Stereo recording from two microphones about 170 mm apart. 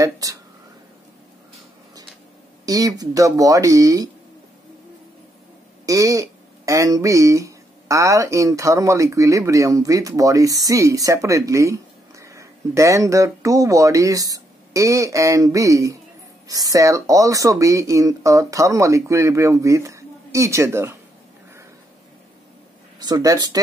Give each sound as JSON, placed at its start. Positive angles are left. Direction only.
{"t": 0.0, "sound": "speech", "side_deg": -20}
{"t": 2.6, "sound": "speech", "side_deg": -20}
{"t": 5.9, "sound": "speech", "side_deg": -20}
{"t": 22.9, "sound": "speech", "side_deg": -25}